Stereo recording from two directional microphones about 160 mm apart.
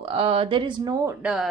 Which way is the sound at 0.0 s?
35° right (ahead or behind).